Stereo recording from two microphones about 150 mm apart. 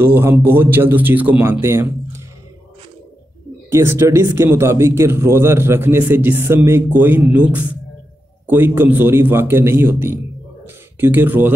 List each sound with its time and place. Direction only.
0.0 s a man's voice: 15° right (ahead or behind)
3.7 s a man's voice: 15° right (ahead or behind)